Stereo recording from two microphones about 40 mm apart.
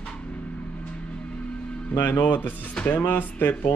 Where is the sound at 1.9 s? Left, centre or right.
Left.